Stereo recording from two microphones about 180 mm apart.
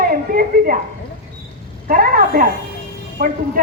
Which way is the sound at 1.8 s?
50° right (ahead or behind).